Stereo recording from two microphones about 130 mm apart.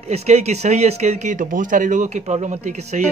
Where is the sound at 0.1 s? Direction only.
60° right (ahead or behind).